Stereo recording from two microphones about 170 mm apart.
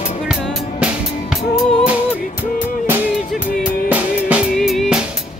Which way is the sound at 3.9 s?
10° right (ahead or behind).